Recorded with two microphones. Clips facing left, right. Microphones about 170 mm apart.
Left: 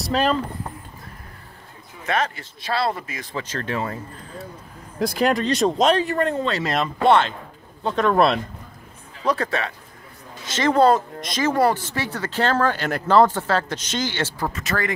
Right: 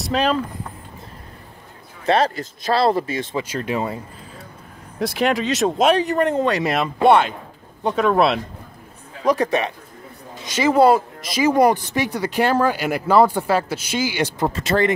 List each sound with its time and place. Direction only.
0.0 s speech: centre (ahead or behind)
2.0 s speech: 35° right (ahead or behind)
3.3 s speech: 10° right (ahead or behind)
4.9 s speech: centre (ahead or behind)
9.2 s speech: 15° right (ahead or behind)
14.5 s speech: 30° right (ahead or behind)